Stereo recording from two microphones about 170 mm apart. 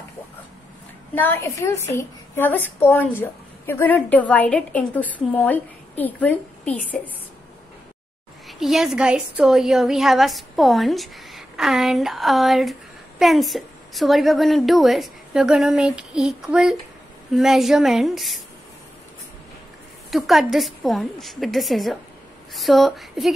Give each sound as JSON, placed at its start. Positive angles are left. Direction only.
{"t": 1.1, "sound": "a woman's voice", "side_deg": 10}
{"t": 8.5, "sound": "a woman's voice", "side_deg": 0}
{"t": 20.1, "sound": "a woman's voice", "side_deg": 0}